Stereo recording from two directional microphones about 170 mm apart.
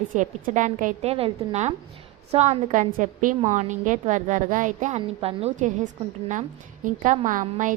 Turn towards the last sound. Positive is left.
turn(degrees=-50)  # may be behind; listen again after turning